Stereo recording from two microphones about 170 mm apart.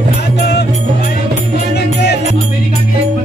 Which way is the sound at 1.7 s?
75° left (ahead or behind).